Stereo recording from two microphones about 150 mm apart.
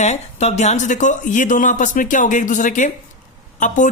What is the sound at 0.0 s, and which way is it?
A woman's voice, 45° left (ahead or behind).